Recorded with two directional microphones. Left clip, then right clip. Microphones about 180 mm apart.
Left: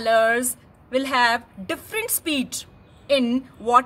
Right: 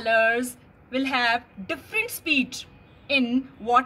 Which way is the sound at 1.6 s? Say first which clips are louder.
Even; 25° left (ahead or behind).